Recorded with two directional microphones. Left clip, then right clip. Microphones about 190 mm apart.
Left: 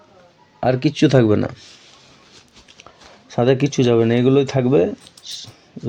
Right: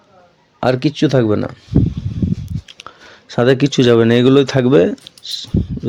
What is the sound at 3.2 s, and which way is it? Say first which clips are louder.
Speech: right 4 dB; 25° right (ahead or behind).